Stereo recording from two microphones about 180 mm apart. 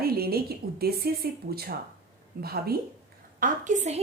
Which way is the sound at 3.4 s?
40° right (ahead or behind).